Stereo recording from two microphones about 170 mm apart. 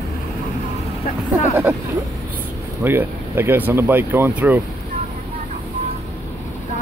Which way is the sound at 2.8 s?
15° right (ahead or behind).